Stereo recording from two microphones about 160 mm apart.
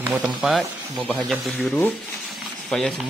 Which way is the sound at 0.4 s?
Centre (ahead or behind).